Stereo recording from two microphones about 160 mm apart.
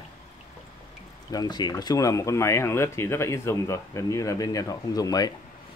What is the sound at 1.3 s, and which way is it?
Speech, 25° left (ahead or behind).